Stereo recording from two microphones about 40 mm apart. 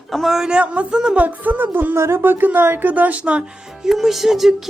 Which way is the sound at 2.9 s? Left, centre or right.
Right.